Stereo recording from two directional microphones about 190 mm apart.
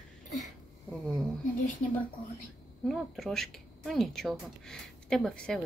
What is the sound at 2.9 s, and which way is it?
A woman's voice, centre (ahead or behind).